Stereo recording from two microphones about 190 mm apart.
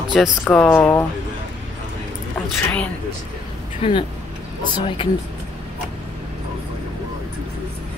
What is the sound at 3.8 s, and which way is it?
Speech, 25° left (ahead or behind).